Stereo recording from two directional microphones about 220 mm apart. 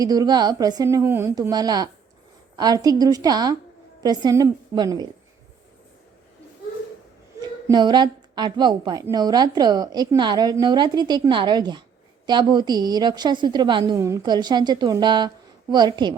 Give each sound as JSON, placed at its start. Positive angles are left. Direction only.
{"t": 0.0, "sound": "a woman's voice", "side_deg": -15}
{"t": 7.7, "sound": "a woman's voice", "side_deg": -20}